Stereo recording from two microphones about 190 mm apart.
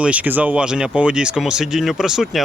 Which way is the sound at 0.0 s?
5° right (ahead or behind).